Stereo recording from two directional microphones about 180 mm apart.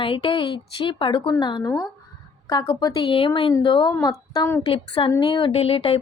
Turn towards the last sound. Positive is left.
turn(degrees=30)  # may be behind; listen again after turning